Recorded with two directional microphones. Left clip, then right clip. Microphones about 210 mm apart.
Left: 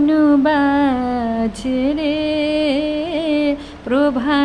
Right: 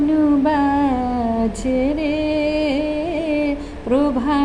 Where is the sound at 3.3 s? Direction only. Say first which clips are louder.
Left 2 dB; 15° left (ahead or behind).